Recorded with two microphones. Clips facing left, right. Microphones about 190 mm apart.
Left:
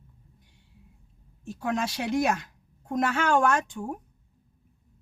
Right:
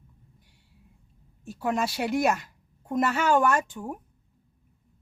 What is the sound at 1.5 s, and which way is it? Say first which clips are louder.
Speech: right 1 dB; centre (ahead or behind).